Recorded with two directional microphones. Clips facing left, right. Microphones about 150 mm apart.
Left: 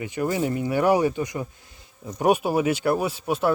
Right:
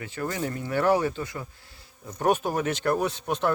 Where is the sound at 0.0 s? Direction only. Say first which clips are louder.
Left 6 dB; 15° left (ahead or behind).